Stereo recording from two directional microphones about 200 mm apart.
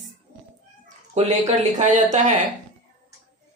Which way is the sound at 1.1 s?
35° right (ahead or behind).